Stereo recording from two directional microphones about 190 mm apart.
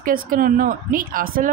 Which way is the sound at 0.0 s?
50° right (ahead or behind).